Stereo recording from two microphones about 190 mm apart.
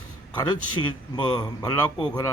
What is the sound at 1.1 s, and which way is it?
Speech, 20° left (ahead or behind).